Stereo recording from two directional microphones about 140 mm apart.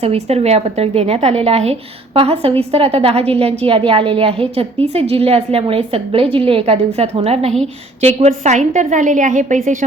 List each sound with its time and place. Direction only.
0.0 s a woman's voice: 50° right (ahead or behind); by 9.6 s 65° right (ahead or behind)